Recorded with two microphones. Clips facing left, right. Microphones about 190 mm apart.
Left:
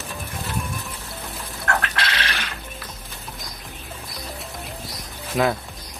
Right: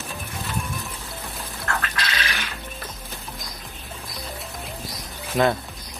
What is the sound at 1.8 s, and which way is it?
Music, 70° left (ahead or behind).